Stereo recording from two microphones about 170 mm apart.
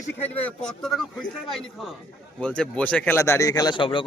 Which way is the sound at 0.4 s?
5° left (ahead or behind).